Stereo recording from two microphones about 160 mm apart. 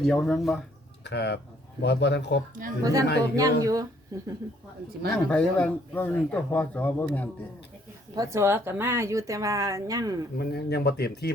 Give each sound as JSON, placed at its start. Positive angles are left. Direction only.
{"t": 0.0, "sound": "speech", "side_deg": 5}
{"t": 1.0, "sound": "a man's voice", "side_deg": 90}
{"t": 2.8, "sound": "speech", "side_deg": -20}
{"t": 5.1, "sound": "speech", "side_deg": 5}
{"t": 8.1, "sound": "speech", "side_deg": -20}
{"t": 10.3, "sound": "speech", "side_deg": 80}